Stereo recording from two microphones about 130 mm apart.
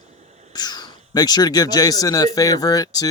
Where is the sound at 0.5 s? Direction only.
30° left (ahead or behind).